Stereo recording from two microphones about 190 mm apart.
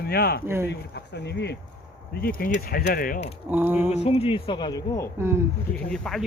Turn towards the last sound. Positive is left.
turn(degrees=0)  # may be behind; listen again after turning